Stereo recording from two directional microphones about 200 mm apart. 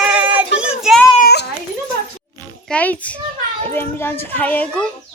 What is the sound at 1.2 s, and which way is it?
Children playing, 55° left (ahead or behind).